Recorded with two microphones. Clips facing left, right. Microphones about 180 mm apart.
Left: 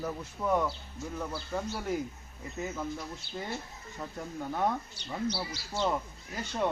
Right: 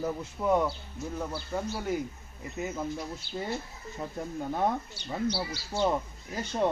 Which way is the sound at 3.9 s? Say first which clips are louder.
Right 3 dB; 20° right (ahead or behind).